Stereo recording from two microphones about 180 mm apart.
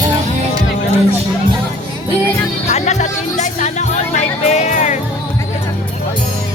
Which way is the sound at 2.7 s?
40° left (ahead or behind).